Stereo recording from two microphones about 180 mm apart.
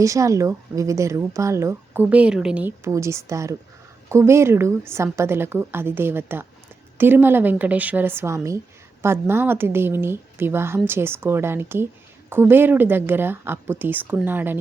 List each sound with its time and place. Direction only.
0.0 s a woman's voice: 15° right (ahead or behind)